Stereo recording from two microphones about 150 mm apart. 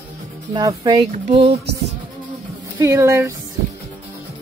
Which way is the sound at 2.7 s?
20° right (ahead or behind).